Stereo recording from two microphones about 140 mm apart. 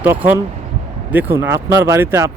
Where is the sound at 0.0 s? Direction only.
15° right (ahead or behind).